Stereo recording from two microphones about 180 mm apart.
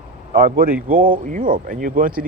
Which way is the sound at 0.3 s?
55° right (ahead or behind).